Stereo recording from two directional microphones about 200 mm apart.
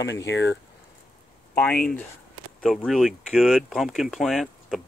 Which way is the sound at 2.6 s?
Centre (ahead or behind).